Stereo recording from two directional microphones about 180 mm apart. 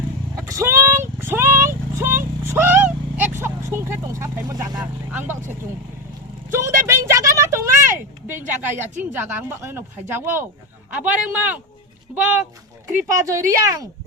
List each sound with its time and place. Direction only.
0.3 s vehicle: 15° right (ahead or behind)
4.8 s a woman's voice: 10° right (ahead or behind)